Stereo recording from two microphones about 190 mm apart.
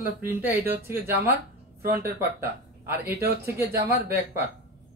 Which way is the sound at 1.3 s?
55° right (ahead or behind).